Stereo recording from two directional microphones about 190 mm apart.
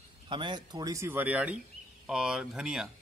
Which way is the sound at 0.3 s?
25° right (ahead or behind).